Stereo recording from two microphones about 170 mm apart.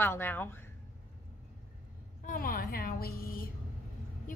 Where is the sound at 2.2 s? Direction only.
50° left (ahead or behind).